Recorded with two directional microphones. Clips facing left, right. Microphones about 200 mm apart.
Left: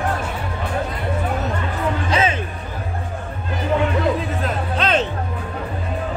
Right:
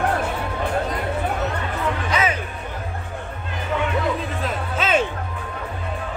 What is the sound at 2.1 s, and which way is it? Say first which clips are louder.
Music: left 3 dB; 30° left (ahead or behind).